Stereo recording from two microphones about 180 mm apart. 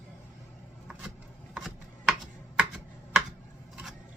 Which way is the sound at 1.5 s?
Centre (ahead or behind).